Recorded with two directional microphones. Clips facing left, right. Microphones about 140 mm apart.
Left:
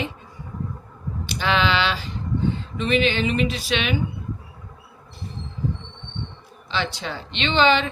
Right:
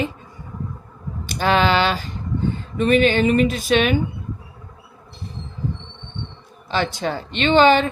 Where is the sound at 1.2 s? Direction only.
45° right (ahead or behind).